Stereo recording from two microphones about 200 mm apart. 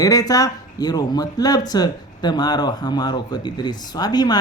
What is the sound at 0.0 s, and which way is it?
Speech, 20° left (ahead or behind).